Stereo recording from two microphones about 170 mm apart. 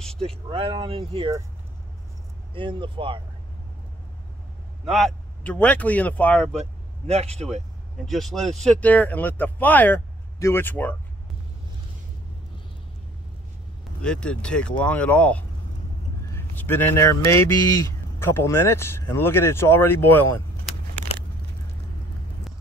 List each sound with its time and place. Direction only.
0.0 s vehicle: 5° left (ahead or behind)
0.3 s speech: 35° right (ahead or behind)
2.5 s speech: 30° right (ahead or behind)
4.8 s speech: centre (ahead or behind)
6.5 s speech: 40° right (ahead or behind)
8.0 s speech: centre (ahead or behind)
14.0 s speech: 5° left (ahead or behind)